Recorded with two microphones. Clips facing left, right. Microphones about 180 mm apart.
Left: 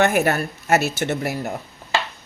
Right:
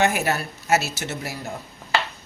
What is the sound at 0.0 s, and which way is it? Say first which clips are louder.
A woman's voice: left 4 dB; 55° left (ahead or behind).